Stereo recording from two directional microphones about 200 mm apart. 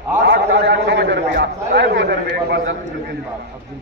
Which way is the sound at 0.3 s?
60° right (ahead or behind).